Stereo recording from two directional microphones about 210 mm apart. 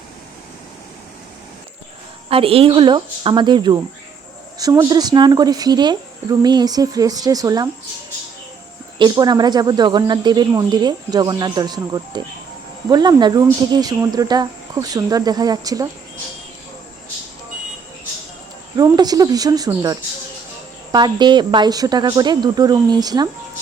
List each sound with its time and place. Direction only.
2.3 s speech: 25° right (ahead or behind)
9.0 s speech: 20° right (ahead or behind)
18.8 s speech: 20° right (ahead or behind)